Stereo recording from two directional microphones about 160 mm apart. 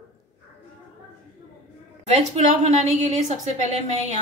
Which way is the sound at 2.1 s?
45° right (ahead or behind).